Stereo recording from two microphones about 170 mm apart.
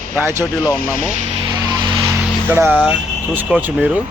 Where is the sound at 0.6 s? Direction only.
20° left (ahead or behind).